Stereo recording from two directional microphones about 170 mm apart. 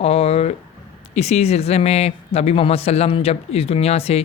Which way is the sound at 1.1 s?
40° left (ahead or behind).